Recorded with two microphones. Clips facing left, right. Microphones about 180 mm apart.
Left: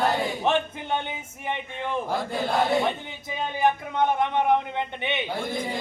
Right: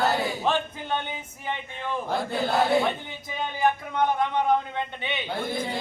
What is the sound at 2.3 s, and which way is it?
Chant, 5° right (ahead or behind).